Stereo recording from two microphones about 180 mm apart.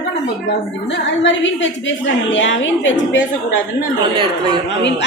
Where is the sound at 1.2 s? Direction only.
90° left.